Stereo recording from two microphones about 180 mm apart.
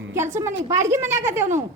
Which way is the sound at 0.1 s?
15° right (ahead or behind).